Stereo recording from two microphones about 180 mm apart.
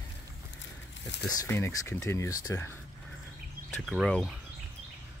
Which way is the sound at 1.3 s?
15° left (ahead or behind).